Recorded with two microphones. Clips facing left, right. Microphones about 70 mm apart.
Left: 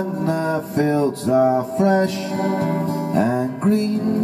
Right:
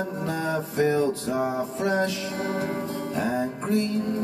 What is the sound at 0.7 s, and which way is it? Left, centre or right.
Music, left.